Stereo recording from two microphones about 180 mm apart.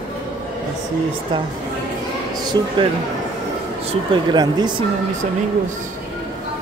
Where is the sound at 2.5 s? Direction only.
25° right (ahead or behind).